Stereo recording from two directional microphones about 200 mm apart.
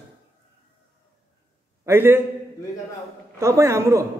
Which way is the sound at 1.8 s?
10° right (ahead or behind).